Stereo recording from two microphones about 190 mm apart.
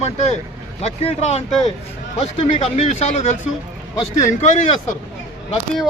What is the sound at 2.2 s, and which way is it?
Speech, 35° left (ahead or behind).